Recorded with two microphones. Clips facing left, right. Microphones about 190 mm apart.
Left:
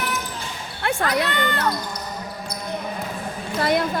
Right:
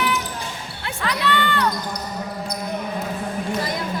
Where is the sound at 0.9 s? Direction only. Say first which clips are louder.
Left 2 dB; 50° left (ahead or behind).